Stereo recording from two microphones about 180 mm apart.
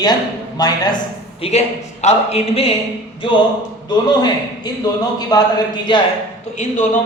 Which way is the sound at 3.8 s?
25° left (ahead or behind).